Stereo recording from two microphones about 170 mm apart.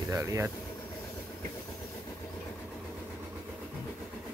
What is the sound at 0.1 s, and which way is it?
Speech, 20° right (ahead or behind).